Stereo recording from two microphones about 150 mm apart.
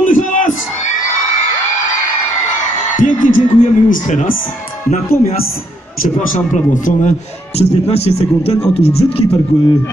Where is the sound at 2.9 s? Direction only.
60° left (ahead or behind).